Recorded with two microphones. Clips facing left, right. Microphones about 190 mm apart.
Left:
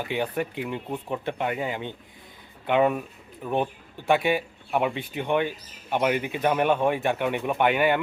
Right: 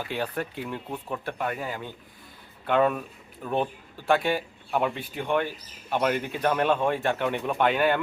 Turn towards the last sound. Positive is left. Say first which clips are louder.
# left 1 dB
turn(degrees=15)  # may be behind; listen again after turning